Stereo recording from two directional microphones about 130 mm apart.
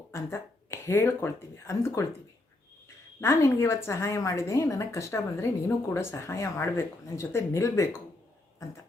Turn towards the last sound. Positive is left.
turn(degrees=25)  # may be behind; listen again after turning